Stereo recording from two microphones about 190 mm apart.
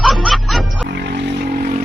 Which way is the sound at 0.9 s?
65° right (ahead or behind).